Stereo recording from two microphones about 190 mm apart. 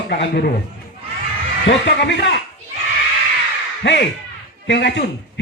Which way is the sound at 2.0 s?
65° left (ahead or behind).